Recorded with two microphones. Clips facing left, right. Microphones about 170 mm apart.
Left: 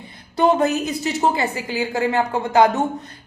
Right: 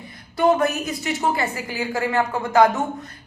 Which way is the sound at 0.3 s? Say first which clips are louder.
Left 1 dB; 20° left (ahead or behind).